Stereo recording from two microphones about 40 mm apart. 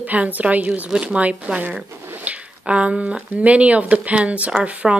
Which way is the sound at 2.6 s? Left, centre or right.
Right.